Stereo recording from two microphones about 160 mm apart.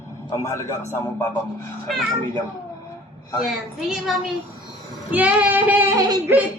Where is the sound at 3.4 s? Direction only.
Centre (ahead or behind).